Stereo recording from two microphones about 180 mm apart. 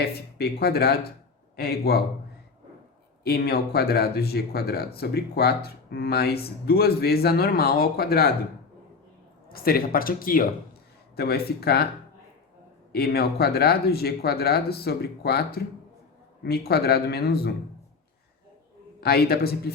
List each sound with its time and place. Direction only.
0.0 s speech: 60° left (ahead or behind)
3.2 s speech: 60° left (ahead or behind)
9.5 s speech: 55° left (ahead or behind)
12.9 s speech: 60° left (ahead or behind)
18.9 s speech: 60° left (ahead or behind)